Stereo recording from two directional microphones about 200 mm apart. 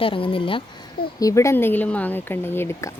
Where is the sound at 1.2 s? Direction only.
15° left (ahead or behind).